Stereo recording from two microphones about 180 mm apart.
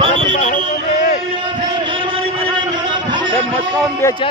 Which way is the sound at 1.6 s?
25° right (ahead or behind).